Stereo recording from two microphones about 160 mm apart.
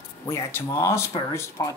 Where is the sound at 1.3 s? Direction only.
15° left (ahead or behind).